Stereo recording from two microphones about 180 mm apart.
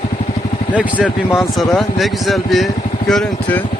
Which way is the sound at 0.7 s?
5° right (ahead or behind).